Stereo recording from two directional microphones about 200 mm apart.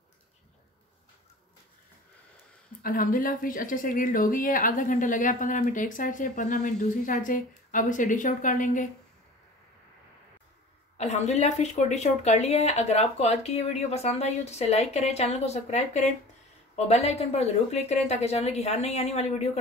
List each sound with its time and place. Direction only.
2.8 s speech: 45° left (ahead or behind)
11.0 s speech: 35° left (ahead or behind)